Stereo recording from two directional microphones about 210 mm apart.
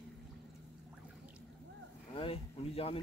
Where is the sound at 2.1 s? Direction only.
25° left (ahead or behind).